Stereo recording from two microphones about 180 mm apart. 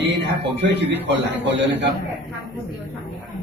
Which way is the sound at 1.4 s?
80° right.